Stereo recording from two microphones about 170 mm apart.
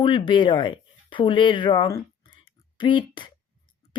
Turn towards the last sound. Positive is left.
turn(degrees=30)  # may be behind; listen again after turning